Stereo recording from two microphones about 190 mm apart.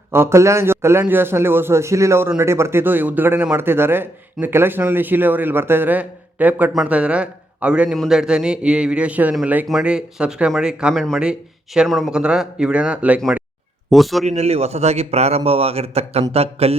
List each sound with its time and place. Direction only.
0.1 s a man's voice: 15° right (ahead or behind)
14.3 s a man's voice: 35° right (ahead or behind)